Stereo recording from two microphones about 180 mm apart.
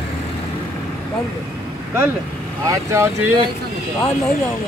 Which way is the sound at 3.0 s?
15° right (ahead or behind).